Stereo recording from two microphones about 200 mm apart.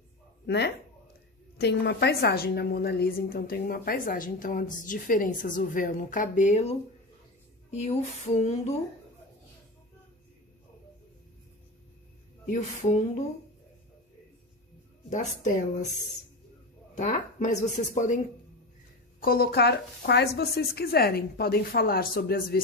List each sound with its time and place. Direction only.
0.5 s a woman's voice: 55° left (ahead or behind); by 8.7 s 30° left (ahead or behind)
12.4 s a woman's voice: 35° left (ahead or behind)
15.0 s a woman's voice: 40° left (ahead or behind)
16.9 s a woman's voice: 40° left (ahead or behind)